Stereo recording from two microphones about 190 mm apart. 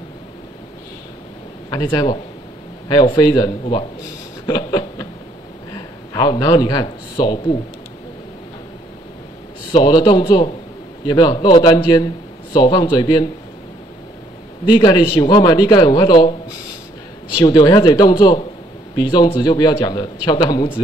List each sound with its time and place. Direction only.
1.7 s speech: 20° left (ahead or behind)
6.1 s speech: 20° left (ahead or behind)
9.7 s speech: 25° left (ahead or behind)
14.7 s speech: 20° left (ahead or behind)